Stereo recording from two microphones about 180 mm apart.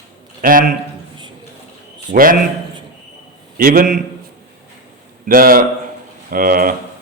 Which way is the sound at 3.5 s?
50° right (ahead or behind).